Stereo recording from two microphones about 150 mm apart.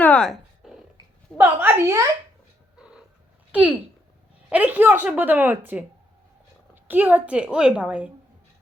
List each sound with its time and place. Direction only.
0.0 s a sound: 5° left (ahead or behind)
1.4 s a woman's voice: 15° right (ahead or behind)
4.4 s a woman's voice: 10° right (ahead or behind)
6.8 s a woman's voice: 10° right (ahead or behind)